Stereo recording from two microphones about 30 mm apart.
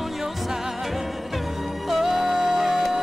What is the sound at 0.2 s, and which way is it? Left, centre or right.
Music, centre.